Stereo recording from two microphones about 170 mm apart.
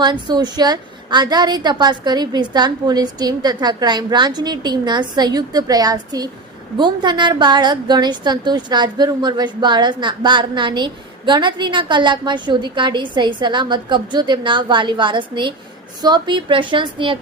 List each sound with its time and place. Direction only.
0.0 s a woman's voice: 25° right (ahead or behind)